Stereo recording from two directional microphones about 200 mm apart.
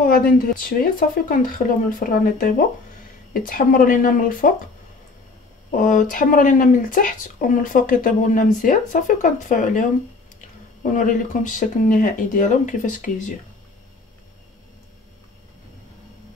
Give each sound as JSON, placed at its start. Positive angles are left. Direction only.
{"t": 0.0, "sound": "speech", "side_deg": 45}
{"t": 5.7, "sound": "speech", "side_deg": 40}